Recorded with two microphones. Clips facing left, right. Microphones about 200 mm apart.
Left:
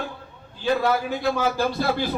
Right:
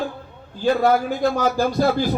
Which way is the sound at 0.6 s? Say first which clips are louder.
Right 4 dB; 45° right (ahead or behind).